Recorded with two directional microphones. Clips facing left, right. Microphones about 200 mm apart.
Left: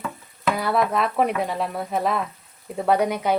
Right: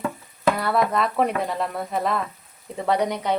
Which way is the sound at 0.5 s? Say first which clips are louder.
Left 4 dB; centre (ahead or behind).